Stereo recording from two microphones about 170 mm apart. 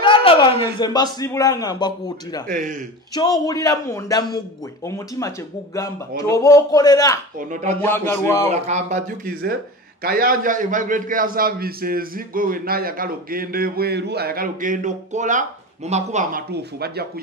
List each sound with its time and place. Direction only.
0.0 s a man's voice: 30° left (ahead or behind)
2.4 s speech: 50° right (ahead or behind)
3.2 s a man's voice: 25° left (ahead or behind)
8.5 s speech: 40° right (ahead or behind)
10.0 s a man's voice: 60° right (ahead or behind)